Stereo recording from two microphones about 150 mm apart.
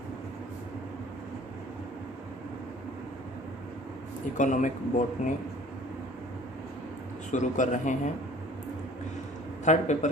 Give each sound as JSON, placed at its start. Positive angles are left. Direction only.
{"t": 4.4, "sound": "a man's voice", "side_deg": 55}
{"t": 7.3, "sound": "a man's voice", "side_deg": 55}
{"t": 9.6, "sound": "a man's voice", "side_deg": 50}